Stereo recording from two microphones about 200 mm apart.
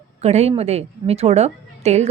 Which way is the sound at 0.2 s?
30° right (ahead or behind).